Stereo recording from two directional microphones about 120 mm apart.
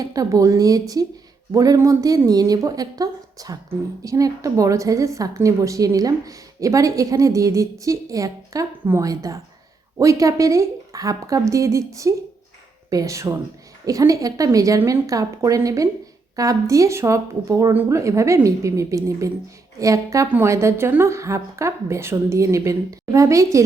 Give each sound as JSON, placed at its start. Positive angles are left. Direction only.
{"t": 0.0, "sound": "a woman's voice", "side_deg": -30}